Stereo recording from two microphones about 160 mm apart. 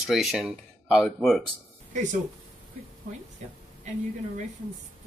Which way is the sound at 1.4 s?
50° right (ahead or behind).